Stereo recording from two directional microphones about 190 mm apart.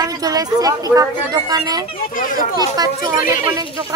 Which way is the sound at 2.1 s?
45° left (ahead or behind).